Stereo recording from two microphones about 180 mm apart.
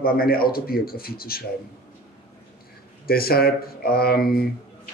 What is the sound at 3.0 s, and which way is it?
Speech, 55° left (ahead or behind).